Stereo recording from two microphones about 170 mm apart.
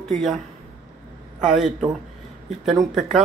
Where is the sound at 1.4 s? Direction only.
Centre (ahead or behind).